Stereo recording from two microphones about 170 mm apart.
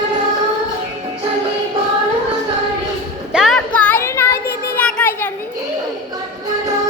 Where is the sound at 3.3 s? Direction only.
Centre (ahead or behind).